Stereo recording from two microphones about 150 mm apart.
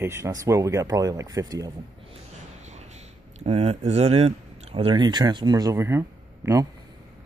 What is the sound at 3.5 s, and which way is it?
Speech, 45° right (ahead or behind).